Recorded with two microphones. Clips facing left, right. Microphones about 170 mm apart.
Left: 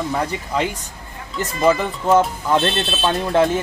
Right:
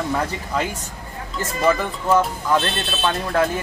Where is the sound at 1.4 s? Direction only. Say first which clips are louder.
Left 3 dB; 20° left (ahead or behind).